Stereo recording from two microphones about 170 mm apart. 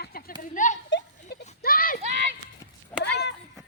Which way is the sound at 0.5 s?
50° left (ahead or behind).